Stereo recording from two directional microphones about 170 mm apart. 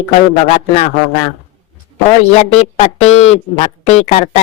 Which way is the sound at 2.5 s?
40° left (ahead or behind).